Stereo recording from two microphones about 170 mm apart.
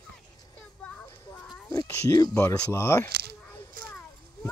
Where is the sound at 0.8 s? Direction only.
10° left (ahead or behind).